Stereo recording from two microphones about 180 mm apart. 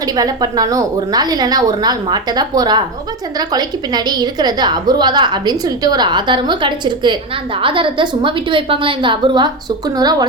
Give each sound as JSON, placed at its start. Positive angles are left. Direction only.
{"t": 0.2, "sound": "a woman's voice", "side_deg": -20}